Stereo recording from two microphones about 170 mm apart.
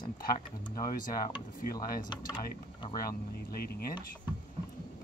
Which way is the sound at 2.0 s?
25° left (ahead or behind).